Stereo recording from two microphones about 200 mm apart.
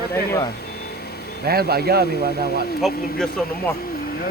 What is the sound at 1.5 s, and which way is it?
Speech, 50° right (ahead or behind).